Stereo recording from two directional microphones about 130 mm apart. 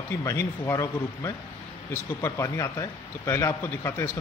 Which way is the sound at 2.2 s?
25° left (ahead or behind).